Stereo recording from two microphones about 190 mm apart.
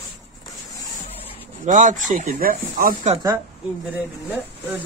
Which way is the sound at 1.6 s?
40° right (ahead or behind).